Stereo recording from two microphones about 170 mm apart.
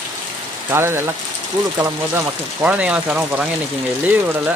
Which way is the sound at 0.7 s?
15° right (ahead or behind).